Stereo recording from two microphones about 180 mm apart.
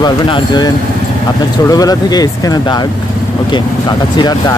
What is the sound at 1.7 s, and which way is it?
Speech, 20° left (ahead or behind).